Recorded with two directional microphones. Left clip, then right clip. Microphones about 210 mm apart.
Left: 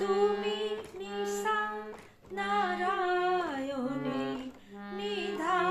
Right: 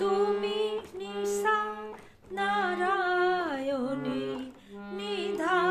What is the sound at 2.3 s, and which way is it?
Singing, 55° right (ahead or behind).